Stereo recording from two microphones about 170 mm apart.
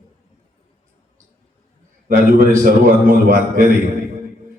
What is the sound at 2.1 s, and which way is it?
A man's voice, 50° right (ahead or behind).